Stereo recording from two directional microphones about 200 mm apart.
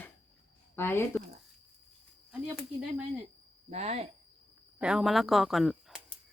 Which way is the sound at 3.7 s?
30° right (ahead or behind).